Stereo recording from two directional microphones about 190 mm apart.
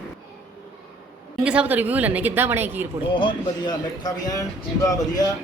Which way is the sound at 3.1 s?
25° left (ahead or behind).